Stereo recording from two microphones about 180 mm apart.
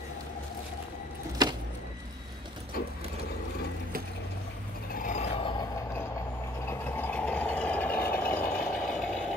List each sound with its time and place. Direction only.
1.4 s a sound: 25° right (ahead or behind)
4.9 s vehicle: 45° left (ahead or behind)
6.6 s vehicle: 10° left (ahead or behind)